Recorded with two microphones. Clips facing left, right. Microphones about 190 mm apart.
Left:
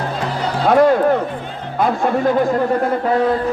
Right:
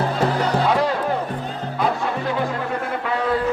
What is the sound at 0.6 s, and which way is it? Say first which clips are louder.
Music: left 11 dB; 50° left (ahead or behind).